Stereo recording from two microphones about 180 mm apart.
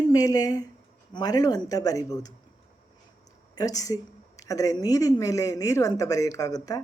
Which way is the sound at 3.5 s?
20° left (ahead or behind).